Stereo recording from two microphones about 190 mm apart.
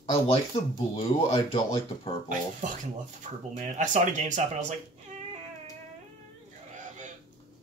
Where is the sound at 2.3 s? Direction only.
45° right (ahead or behind).